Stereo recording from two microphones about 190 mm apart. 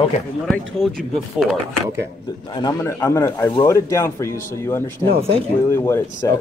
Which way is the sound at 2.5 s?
20° left (ahead or behind).